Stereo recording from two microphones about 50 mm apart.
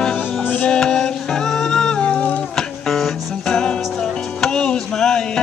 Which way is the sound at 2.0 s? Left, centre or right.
Left.